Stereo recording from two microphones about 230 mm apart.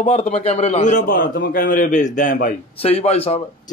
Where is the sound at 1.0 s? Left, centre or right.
Left.